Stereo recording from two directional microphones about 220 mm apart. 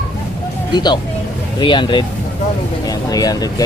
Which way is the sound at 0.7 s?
20° left (ahead or behind).